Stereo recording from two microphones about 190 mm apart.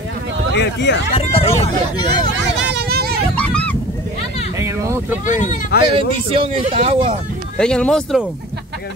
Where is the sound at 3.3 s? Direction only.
5° left (ahead or behind).